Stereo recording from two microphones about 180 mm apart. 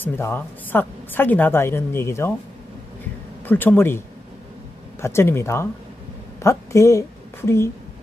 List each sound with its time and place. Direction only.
0.0 s a woman's voice: 10° left (ahead or behind)
3.4 s a woman's voice: 10° left (ahead or behind)
5.0 s a woman's voice: 15° left (ahead or behind)